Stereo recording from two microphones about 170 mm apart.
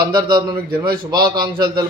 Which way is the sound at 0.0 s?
25° right (ahead or behind).